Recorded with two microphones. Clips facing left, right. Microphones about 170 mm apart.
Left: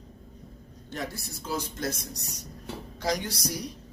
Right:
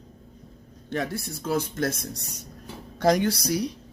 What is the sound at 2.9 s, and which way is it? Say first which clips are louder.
Speech: right 9 dB; 55° right (ahead or behind).